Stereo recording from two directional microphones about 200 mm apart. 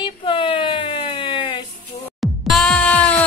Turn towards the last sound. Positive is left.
turn(degrees=5)  # may be behind; listen again after turning